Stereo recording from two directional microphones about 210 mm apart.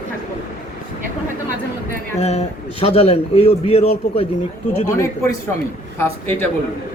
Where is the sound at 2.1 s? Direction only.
30° left (ahead or behind).